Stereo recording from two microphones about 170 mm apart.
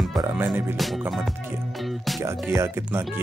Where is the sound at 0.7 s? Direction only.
Centre (ahead or behind).